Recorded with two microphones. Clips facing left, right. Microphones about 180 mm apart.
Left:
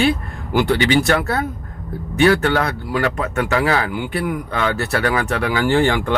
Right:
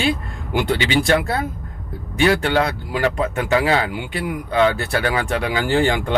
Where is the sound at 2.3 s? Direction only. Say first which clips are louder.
Even; 25° right (ahead or behind).